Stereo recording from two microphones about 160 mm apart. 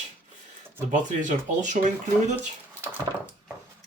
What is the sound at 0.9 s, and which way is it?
Speech, 50° right (ahead or behind).